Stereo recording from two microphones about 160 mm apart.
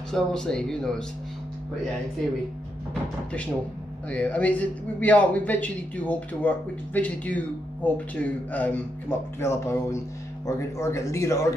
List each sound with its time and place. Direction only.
0.1 s speech: 5° left (ahead or behind)
4.1 s speech: 10° left (ahead or behind)